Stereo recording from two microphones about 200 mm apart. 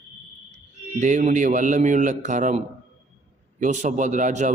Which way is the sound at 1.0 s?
35° right (ahead or behind).